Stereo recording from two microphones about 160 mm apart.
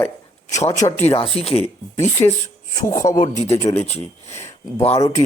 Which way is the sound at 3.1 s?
50° left (ahead or behind).